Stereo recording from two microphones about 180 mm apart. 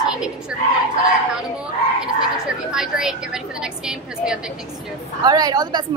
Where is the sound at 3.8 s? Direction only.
5° right (ahead or behind).